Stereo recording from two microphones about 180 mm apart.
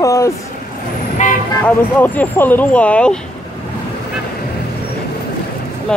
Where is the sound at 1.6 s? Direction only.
10° left (ahead or behind).